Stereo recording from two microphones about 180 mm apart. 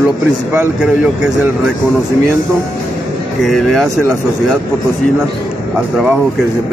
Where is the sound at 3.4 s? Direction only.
Centre (ahead or behind).